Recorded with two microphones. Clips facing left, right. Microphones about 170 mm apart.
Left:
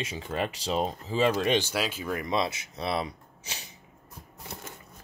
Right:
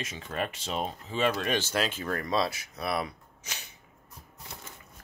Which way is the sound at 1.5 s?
10° left (ahead or behind).